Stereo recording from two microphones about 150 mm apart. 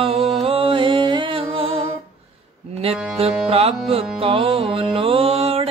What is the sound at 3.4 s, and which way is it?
Music, 40° right (ahead or behind).